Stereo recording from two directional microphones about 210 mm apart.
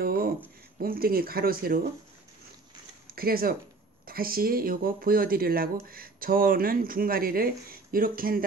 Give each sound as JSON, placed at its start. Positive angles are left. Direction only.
{"t": 0.0, "sound": "a sound", "side_deg": -45}
{"t": 0.7, "sound": "speech", "side_deg": -45}
{"t": 3.1, "sound": "speech", "side_deg": -45}